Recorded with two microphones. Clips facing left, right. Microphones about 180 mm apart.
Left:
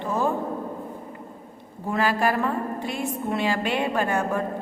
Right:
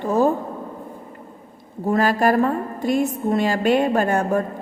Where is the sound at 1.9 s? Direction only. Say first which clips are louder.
Right 5 dB; 45° right (ahead or behind).